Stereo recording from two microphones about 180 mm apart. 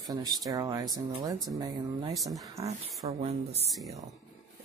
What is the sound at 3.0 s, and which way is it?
Speech, 35° right (ahead or behind).